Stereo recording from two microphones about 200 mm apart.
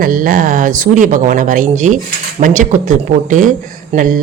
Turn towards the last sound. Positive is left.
turn(degrees=-40)  # may be behind; listen again after turning